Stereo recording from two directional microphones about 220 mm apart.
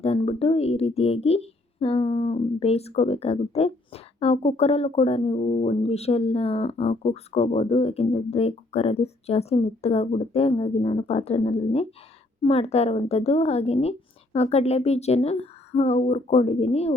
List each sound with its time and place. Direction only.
0.0 s a woman's voice: 25° left (ahead or behind)